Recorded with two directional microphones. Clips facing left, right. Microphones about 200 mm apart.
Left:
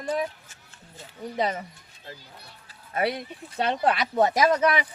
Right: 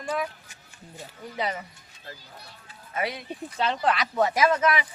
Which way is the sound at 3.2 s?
55° left (ahead or behind).